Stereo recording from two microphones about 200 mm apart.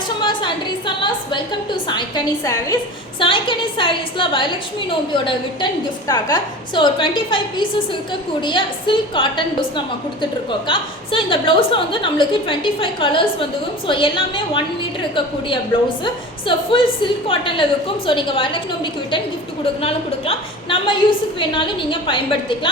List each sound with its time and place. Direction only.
0.2 s a woman's voice: 25° left (ahead or behind)
16.0 s a woman's voice: 25° left (ahead or behind)